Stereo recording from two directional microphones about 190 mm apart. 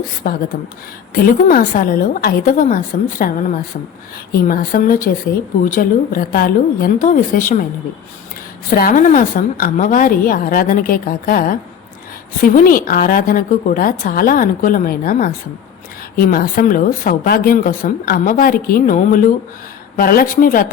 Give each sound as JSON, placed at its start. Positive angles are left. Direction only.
{"t": 0.2, "sound": "a woman's voice", "side_deg": 50}
{"t": 8.7, "sound": "a woman's voice", "side_deg": 50}